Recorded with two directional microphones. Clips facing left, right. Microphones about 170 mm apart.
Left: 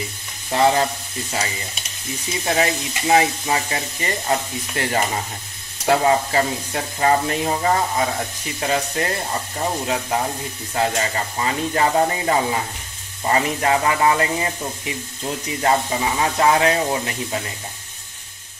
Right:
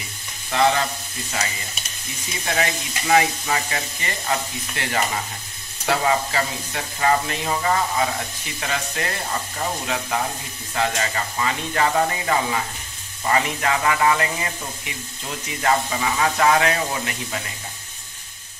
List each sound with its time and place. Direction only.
0.5 s sizzle: 35° left (ahead or behind)
2.4 s speech: 30° left (ahead or behind)
5.9 s sizzle: 40° left (ahead or behind)
10.7 s speech: 35° left (ahead or behind)